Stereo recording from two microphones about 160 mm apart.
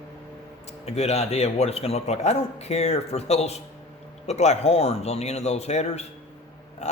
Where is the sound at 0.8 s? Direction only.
40° left (ahead or behind).